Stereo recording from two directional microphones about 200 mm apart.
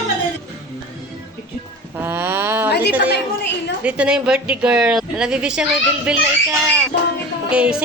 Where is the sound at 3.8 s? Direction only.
5° right (ahead or behind).